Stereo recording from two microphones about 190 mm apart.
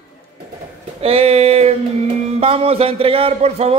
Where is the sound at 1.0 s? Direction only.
30° right (ahead or behind).